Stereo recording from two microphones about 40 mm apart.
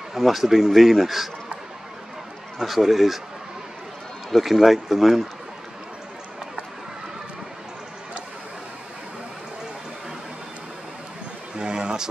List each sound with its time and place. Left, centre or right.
0.1 s speech: centre
2.6 s speech: centre
4.3 s speech: centre
11.5 s a sound: centre